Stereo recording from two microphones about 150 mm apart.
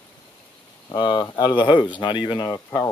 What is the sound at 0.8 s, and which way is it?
Speech, 30° left (ahead or behind).